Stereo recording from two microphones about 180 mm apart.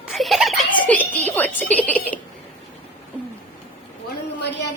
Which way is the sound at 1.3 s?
10° left (ahead or behind).